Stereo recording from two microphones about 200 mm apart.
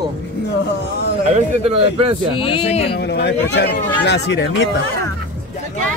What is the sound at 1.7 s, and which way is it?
Speech, 30° right (ahead or behind).